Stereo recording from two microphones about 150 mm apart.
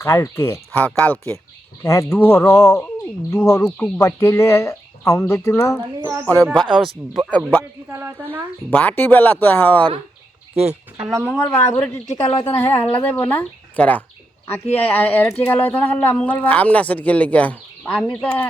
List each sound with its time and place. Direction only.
0.0 s speech: 20° left (ahead or behind)
6.0 s a woman's voice: 15° right (ahead or behind)
6.2 s speech: 10° left (ahead or behind)
6.6 s speech: centre (ahead or behind)
7.3 s speech: 10° left (ahead or behind)
7.9 s a woman's voice: 15° right (ahead or behind)
8.7 s speech: 10° left (ahead or behind)
10.5 s speech: 45° right (ahead or behind)
11.3 s a woman's voice: 15° left (ahead or behind)